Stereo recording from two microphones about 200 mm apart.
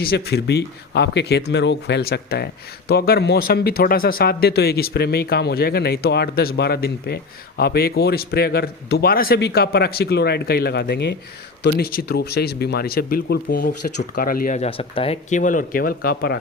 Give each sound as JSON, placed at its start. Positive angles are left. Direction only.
{"t": 0.0, "sound": "speech", "side_deg": 50}